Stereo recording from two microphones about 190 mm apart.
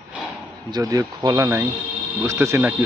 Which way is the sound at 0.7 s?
20° right (ahead or behind).